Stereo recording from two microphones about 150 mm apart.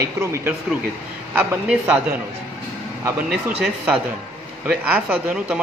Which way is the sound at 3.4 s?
5° right (ahead or behind).